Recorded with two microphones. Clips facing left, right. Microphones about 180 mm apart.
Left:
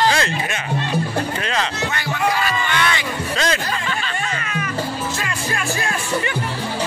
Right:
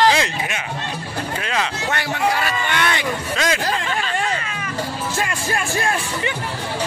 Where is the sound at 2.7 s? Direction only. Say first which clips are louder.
Right 1 dB; 50° right (ahead or behind).